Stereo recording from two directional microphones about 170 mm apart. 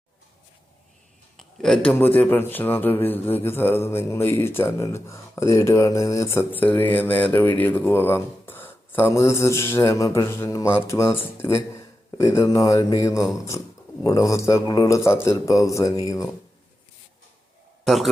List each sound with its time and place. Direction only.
1.4 s a man's voice: centre (ahead or behind); by 16.3 s 20° left (ahead or behind)
17.8 s speech: centre (ahead or behind)